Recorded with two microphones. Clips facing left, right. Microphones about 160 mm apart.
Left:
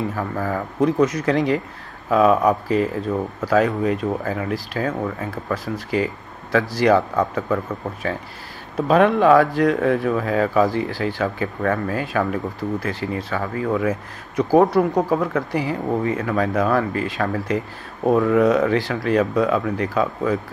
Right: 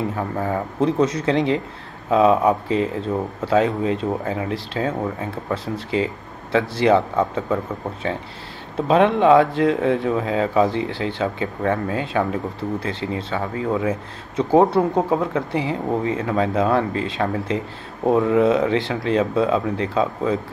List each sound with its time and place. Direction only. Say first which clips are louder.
0.1 s speech: right 1 dB; 20° right (ahead or behind)